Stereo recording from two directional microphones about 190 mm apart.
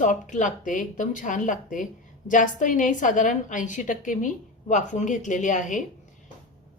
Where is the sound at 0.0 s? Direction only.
40° left (ahead or behind).